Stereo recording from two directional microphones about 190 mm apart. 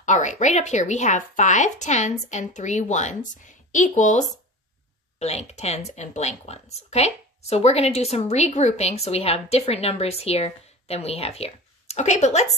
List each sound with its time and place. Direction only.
0.0 s a woman's voice: 40° left (ahead or behind)